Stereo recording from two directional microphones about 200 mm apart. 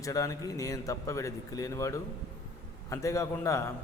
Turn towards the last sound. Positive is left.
turn(degrees=15)  # may be behind; listen again after turning